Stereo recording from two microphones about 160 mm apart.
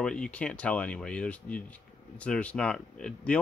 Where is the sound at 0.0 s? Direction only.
5° left (ahead or behind).